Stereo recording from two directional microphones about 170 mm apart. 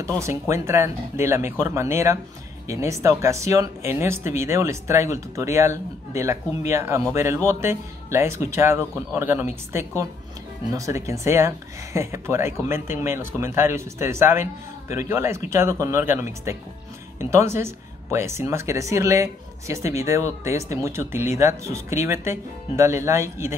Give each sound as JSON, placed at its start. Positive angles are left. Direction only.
{"t": 0.2, "sound": "speech", "side_deg": -15}